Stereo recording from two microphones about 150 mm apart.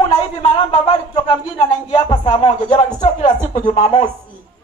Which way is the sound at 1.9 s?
45° left (ahead or behind).